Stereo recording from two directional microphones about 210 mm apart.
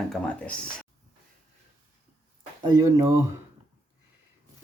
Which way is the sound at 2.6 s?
15° right (ahead or behind).